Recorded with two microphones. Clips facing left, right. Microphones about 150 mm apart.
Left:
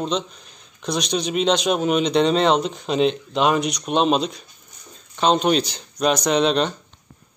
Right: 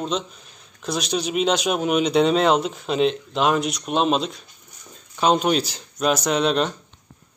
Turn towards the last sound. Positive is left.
turn(degrees=0)  # may be behind; listen again after turning